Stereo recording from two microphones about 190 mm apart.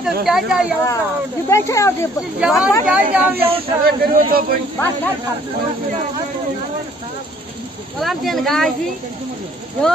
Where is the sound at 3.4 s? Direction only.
30° right (ahead or behind).